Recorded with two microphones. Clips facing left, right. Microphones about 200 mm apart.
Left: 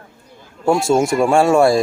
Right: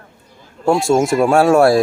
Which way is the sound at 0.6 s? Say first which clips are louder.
Right 1 dB; centre (ahead or behind).